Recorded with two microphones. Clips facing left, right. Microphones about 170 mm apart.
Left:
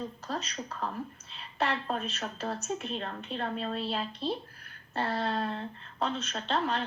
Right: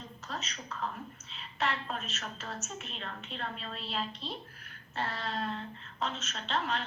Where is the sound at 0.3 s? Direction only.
35° left (ahead or behind).